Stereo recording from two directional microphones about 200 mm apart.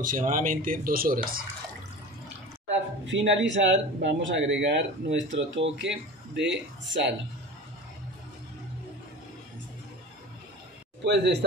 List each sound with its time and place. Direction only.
0.0 s speech: 40° right (ahead or behind)
3.1 s a man's voice: 65° right (ahead or behind)
11.1 s a man's voice: 55° right (ahead or behind)